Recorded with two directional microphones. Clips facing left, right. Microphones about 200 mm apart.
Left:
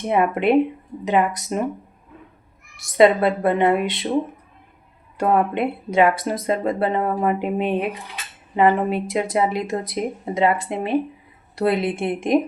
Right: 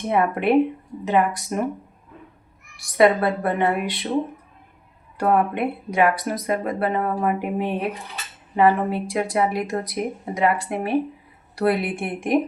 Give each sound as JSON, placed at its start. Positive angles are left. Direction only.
{"t": 0.1, "sound": "speech", "side_deg": 20}
{"t": 2.7, "sound": "speech", "side_deg": 20}
{"t": 5.1, "sound": "speech", "side_deg": 25}